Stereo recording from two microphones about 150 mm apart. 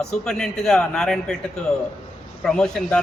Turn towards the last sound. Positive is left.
turn(degrees=5)  # may be behind; listen again after turning